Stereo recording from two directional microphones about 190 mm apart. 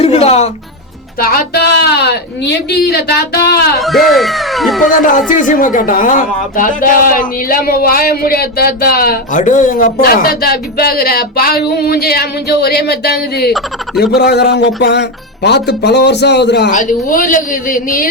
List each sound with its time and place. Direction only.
0.0 s speech: 35° left (ahead or behind)
1.2 s speech: 50° left (ahead or behind)
3.8 s speech: centre (ahead or behind)
4.9 s speech: 45° left (ahead or behind); by 16.6 s 65° left (ahead or behind)
16.7 s speech: 45° left (ahead or behind)